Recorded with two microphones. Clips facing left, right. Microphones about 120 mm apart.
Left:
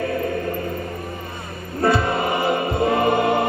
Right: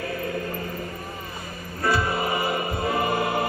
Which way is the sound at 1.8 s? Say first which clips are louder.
Left 5 dB; 25° left (ahead or behind).